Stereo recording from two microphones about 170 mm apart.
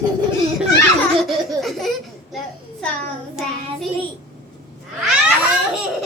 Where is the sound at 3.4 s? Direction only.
5° right (ahead or behind).